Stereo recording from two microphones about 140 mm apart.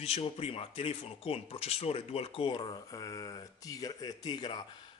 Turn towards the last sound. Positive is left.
turn(degrees=30)  # may be behind; listen again after turning